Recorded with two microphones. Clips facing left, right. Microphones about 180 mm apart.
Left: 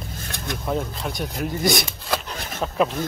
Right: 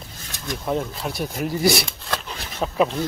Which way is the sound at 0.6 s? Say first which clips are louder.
Right 1 dB; centre (ahead or behind).